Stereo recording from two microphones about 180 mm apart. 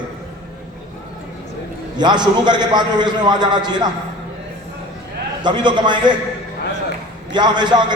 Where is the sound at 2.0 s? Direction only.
25° right (ahead or behind).